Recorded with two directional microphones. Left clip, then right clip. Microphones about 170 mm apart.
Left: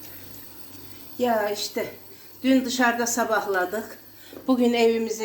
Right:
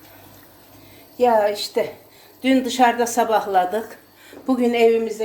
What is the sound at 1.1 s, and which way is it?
A woman's voice, 35° right (ahead or behind).